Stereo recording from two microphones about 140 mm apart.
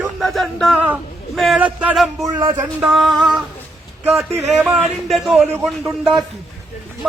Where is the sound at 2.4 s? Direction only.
35° right (ahead or behind).